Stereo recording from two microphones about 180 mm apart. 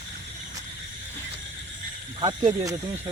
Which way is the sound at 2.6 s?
20° right (ahead or behind).